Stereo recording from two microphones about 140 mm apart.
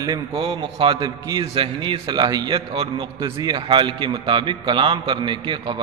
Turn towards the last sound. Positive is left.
turn(degrees=-35)  # may be behind; listen again after turning